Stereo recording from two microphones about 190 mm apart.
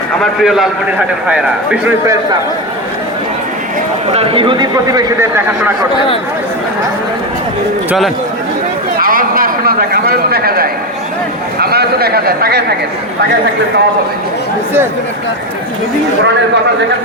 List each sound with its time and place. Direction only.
0.2 s a man's voice: centre (ahead or behind)
4.1 s a man's voice: 30° right (ahead or behind)
7.9 s a man's voice: centre (ahead or behind)
9.0 s a sound: 50° right (ahead or behind)
11.6 s a man's voice: 55° right (ahead or behind)